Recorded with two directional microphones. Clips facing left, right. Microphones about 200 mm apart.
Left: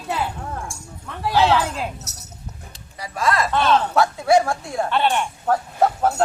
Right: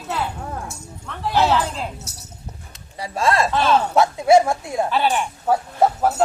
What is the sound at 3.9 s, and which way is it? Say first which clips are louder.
Speech: right 2 dB; 20° right (ahead or behind).